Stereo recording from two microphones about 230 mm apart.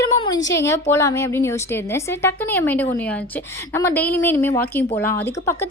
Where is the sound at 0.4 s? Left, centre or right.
Centre.